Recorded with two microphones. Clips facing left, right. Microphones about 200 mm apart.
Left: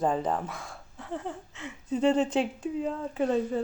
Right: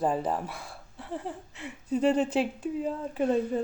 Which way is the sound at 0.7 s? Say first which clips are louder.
Even; 35° right (ahead or behind).